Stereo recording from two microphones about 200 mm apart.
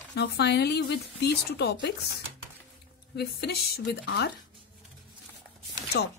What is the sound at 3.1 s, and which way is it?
Speech, 55° left (ahead or behind).